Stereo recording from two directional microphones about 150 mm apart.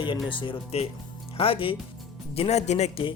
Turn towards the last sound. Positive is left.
turn(degrees=45)  # may be behind; listen again after turning